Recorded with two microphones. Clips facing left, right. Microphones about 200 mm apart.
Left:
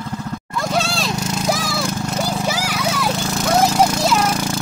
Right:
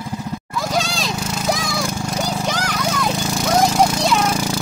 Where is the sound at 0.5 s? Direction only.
Centre (ahead or behind).